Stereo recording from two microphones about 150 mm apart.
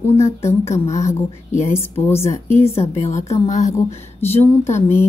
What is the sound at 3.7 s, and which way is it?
A woman's voice, 15° left (ahead or behind).